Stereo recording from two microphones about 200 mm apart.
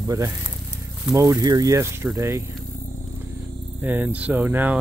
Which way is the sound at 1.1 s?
15° right (ahead or behind).